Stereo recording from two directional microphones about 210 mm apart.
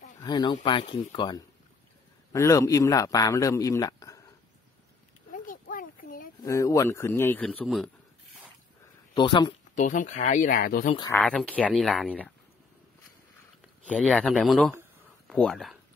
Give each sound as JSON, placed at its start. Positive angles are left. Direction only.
{"t": 0.2, "sound": "speech", "side_deg": 20}
{"t": 5.3, "sound": "a sound", "side_deg": 40}
{"t": 6.4, "sound": "speech", "side_deg": 15}
{"t": 9.1, "sound": "speech", "side_deg": 20}
{"t": 9.8, "sound": "speech", "side_deg": 35}
{"t": 11.1, "sound": "speech", "side_deg": 0}
{"t": 13.8, "sound": "speech", "side_deg": 5}